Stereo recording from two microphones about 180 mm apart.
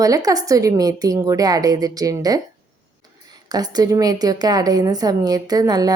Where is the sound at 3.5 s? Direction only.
20° right (ahead or behind).